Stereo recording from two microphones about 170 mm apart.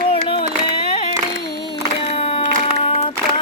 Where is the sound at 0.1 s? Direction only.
30° left (ahead or behind).